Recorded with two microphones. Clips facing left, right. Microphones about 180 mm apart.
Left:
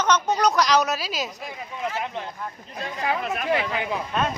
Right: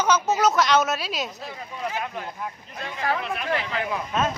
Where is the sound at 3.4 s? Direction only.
15° left (ahead or behind).